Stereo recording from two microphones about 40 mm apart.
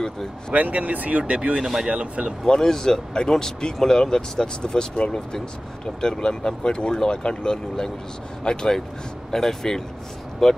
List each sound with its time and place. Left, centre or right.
0.5 s speech: right
2.4 s speech: centre